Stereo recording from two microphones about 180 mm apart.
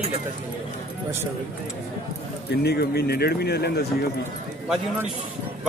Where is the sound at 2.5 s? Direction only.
65° left (ahead or behind).